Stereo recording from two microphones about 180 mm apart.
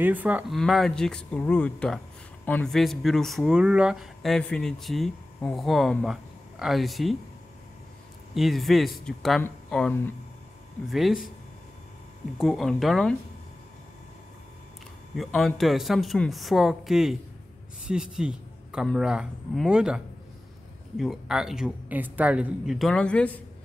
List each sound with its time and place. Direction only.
0.0 s speech: 10° right (ahead or behind)
0.6 s speech: centre (ahead or behind)
8.4 s speech: centre (ahead or behind)
12.4 s speech: centre (ahead or behind)
15.1 s a man's voice: centre (ahead or behind)
21.0 s speech: centre (ahead or behind)